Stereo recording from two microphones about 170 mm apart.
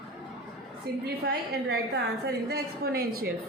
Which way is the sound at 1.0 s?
75° right (ahead or behind).